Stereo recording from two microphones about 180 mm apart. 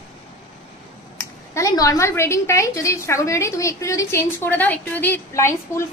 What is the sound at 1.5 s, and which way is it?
A woman's voice, 20° left (ahead or behind).